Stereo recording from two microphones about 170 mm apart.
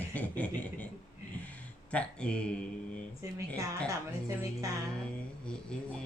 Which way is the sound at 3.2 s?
20° right (ahead or behind).